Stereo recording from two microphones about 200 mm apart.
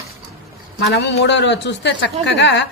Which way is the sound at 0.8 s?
55° left (ahead or behind).